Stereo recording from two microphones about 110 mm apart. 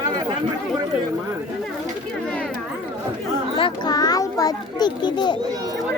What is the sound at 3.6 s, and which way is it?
A child's voice, 40° left (ahead or behind).